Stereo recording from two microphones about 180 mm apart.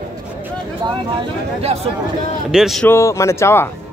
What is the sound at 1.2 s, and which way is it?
Speech, 35° right (ahead or behind).